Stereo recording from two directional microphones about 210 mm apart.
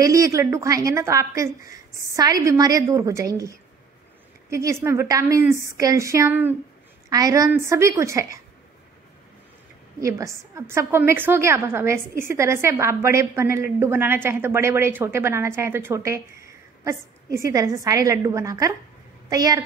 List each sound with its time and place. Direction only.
0.0 s a woman's voice: 15° right (ahead or behind)
9.9 s a woman's voice: 15° right (ahead or behind)